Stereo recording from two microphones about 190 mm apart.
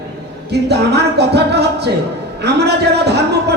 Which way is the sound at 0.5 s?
60° right (ahead or behind).